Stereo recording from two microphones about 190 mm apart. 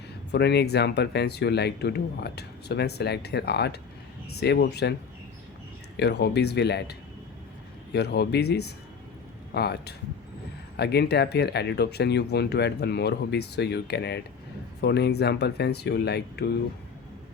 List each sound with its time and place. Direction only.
0.3 s speech: 60° left (ahead or behind)
6.0 s speech: 60° left (ahead or behind)
7.9 s speech: 60° left (ahead or behind)